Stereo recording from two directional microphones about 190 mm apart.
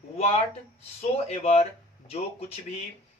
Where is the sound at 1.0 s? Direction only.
35° left (ahead or behind).